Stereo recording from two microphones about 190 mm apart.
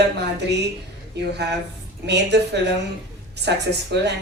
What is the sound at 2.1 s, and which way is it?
Speech, 65° right (ahead or behind).